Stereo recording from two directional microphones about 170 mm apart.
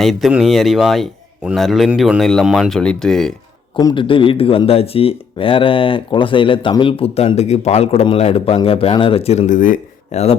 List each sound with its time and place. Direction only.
0.0 s speech: centre (ahead or behind)
3.8 s speech: 25° left (ahead or behind); by 10.3 s 40° left (ahead or behind)